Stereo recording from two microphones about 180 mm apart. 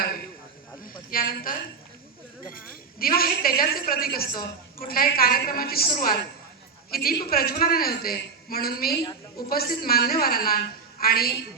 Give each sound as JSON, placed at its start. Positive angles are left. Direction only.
{"t": 1.1, "sound": "a woman's voice", "side_deg": 55}